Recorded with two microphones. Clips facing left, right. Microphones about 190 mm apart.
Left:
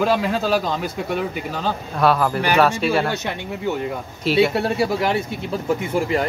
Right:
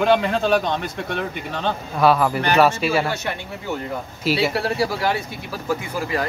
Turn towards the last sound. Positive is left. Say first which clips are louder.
# left 4 dB
turn(degrees=25)  # may be behind; listen again after turning